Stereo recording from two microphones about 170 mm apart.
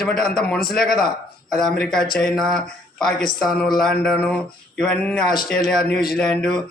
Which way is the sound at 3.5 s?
60° left (ahead or behind).